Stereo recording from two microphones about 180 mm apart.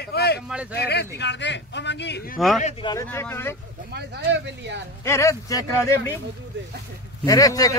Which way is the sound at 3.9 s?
65° right (ahead or behind).